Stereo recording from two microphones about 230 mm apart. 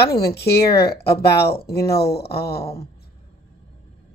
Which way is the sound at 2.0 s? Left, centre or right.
Left.